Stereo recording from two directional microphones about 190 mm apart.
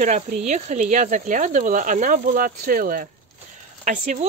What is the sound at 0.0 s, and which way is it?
Speech, 40° right (ahead or behind).